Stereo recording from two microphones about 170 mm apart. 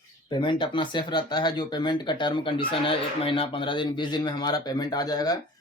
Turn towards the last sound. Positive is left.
turn(degrees=25)  # may be behind; listen again after turning